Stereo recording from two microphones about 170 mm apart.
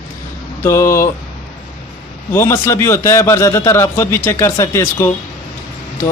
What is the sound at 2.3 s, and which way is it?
Speech, 15° left (ahead or behind).